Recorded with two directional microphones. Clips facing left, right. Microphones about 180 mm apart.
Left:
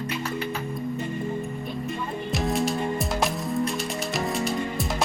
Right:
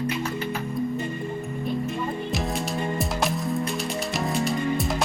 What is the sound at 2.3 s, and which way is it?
Music, centre (ahead or behind).